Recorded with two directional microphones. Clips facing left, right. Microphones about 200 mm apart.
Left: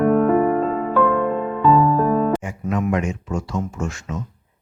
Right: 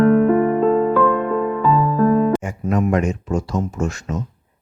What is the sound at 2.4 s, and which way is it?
Music, 45° right (ahead or behind).